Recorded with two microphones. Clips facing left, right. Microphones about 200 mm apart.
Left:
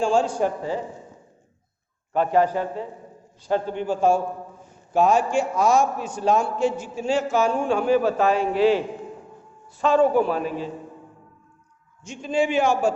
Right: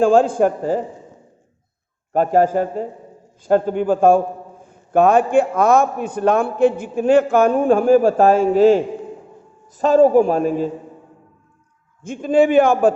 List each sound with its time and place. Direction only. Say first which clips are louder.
0.0 s a man's voice: right 7 dB; 55° right (ahead or behind)
2.1 s a man's voice: right 5 dB; 45° right (ahead or behind)
12.0 s a man's voice: right 8 dB; 55° right (ahead or behind)